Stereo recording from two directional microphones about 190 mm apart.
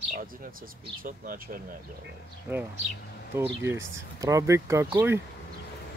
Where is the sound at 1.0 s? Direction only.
50° right (ahead or behind).